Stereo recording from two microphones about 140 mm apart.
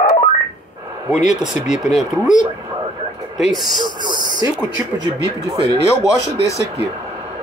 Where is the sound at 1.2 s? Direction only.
5° right (ahead or behind).